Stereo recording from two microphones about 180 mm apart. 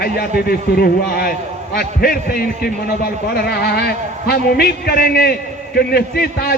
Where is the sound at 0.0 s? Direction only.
60° left (ahead or behind).